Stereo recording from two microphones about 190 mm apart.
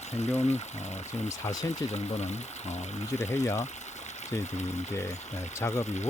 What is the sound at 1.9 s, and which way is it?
Speech, 35° left (ahead or behind).